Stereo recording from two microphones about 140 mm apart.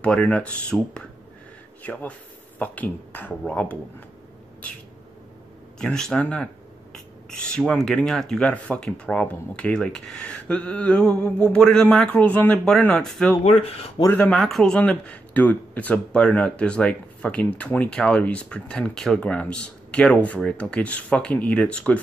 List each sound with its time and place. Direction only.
0.0 s speech: 10° left (ahead or behind)
5.8 s speech: 5° left (ahead or behind)
13.4 s speech: 45° left (ahead or behind)
14.1 s speech: 10° left (ahead or behind)